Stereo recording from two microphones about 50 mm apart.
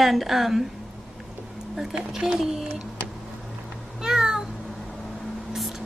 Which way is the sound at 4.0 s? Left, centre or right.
Centre.